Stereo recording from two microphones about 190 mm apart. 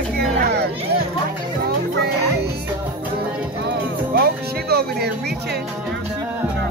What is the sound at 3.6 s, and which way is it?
Music, 55° right (ahead or behind).